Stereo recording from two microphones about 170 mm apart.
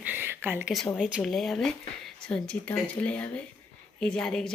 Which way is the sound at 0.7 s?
Centre (ahead or behind).